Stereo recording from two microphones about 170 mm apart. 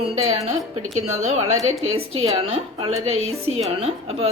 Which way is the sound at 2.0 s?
35° right (ahead or behind).